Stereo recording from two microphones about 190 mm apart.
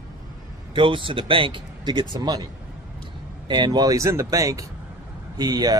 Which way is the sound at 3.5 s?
20° right (ahead or behind).